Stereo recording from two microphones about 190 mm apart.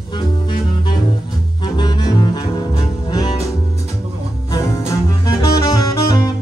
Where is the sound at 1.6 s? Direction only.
25° left (ahead or behind).